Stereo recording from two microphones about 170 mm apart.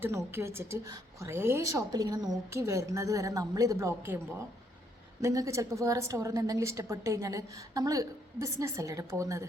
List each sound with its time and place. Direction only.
0.0 s a woman's voice: 15° right (ahead or behind)